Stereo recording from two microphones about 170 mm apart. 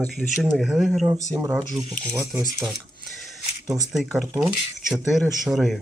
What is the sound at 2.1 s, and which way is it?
Speech, 20° right (ahead or behind).